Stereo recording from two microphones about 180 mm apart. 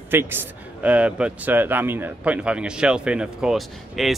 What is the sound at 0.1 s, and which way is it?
A man's voice, 10° right (ahead or behind).